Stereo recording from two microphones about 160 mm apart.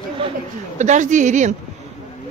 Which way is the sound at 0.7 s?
50° right (ahead or behind).